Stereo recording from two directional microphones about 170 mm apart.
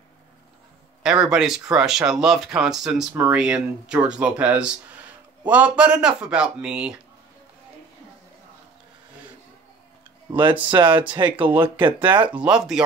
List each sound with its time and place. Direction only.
1.0 s speech: 5° right (ahead or behind)
10.9 s speech: 10° right (ahead or behind)
11.8 s speech: 30° right (ahead or behind)
12.3 s speech: 5° right (ahead or behind)